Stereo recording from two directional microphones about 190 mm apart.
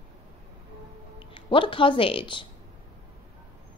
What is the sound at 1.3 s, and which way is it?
Speech, 25° left (ahead or behind).